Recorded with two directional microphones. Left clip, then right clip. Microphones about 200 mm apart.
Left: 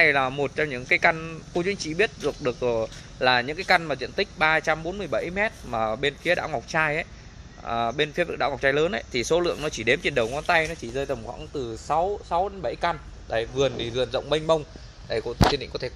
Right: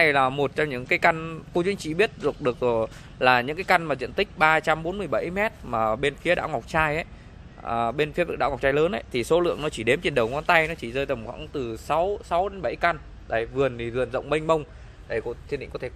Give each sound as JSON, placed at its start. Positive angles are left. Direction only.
{"t": 0.0, "sound": "speech", "side_deg": -10}
{"t": 15.0, "sound": "speech", "side_deg": 15}